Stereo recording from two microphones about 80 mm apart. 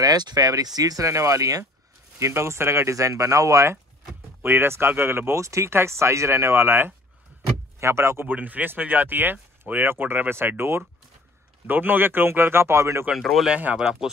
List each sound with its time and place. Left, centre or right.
0.0 s speech: right
4.4 s speech: right
8.3 s speech: right
13.2 s speech: centre
13.5 s speech: centre